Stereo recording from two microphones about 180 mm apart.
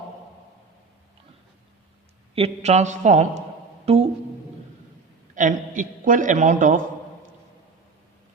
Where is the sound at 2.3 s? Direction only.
35° right (ahead or behind).